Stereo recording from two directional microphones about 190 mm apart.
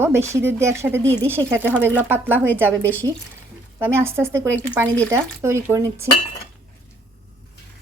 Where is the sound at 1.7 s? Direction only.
10° right (ahead or behind).